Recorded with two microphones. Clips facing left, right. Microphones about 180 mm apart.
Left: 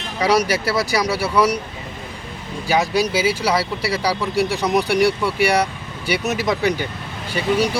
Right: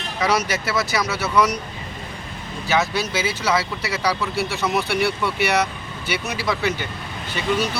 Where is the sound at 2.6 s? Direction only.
10° left (ahead or behind).